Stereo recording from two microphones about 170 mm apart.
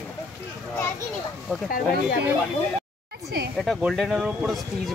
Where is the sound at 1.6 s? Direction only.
55° left (ahead or behind).